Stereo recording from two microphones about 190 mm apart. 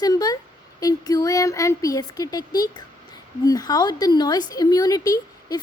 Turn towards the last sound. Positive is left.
turn(degrees=20)  # may be behind; listen again after turning